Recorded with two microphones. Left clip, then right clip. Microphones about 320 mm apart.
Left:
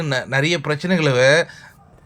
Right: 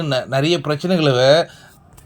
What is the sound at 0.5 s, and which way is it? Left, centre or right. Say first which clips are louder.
Speech: right 2 dB; left.